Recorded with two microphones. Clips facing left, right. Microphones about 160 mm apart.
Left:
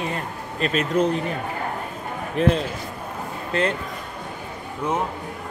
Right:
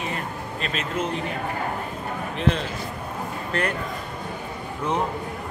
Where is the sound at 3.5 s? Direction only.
25° left (ahead or behind).